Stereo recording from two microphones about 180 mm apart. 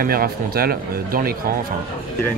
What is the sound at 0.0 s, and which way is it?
Speech, 55° right (ahead or behind).